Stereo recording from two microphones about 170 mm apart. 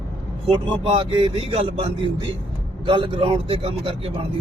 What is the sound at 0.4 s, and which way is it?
A man's voice, 30° right (ahead or behind).